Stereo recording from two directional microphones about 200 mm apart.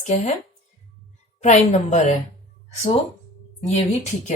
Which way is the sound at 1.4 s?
35° left (ahead or behind).